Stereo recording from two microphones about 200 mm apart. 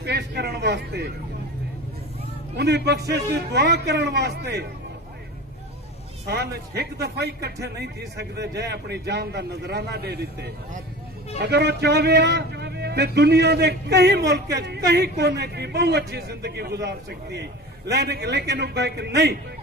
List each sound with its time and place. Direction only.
0.0 s a sound: 55° right (ahead or behind)
2.5 s a man's voice: 55° right (ahead or behind)
6.2 s a man's voice: 55° right (ahead or behind)